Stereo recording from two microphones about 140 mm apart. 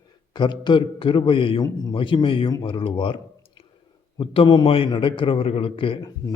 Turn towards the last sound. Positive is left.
turn(degrees=40)  # may be behind; listen again after turning